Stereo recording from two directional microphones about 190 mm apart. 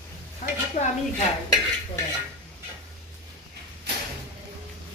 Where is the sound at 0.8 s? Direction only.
40° left (ahead or behind).